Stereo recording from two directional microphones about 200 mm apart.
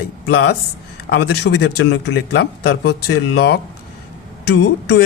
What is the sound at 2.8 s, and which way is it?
Speech, 90° left.